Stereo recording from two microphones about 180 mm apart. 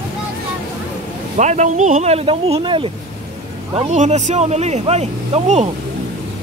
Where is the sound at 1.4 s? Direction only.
40° right (ahead or behind).